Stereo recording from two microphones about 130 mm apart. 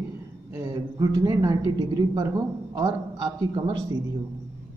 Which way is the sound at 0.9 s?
30° right (ahead or behind).